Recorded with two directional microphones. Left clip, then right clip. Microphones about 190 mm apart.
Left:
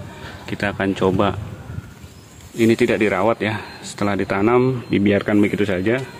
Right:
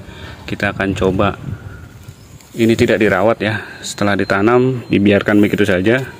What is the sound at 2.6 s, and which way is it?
Speech, 15° right (ahead or behind).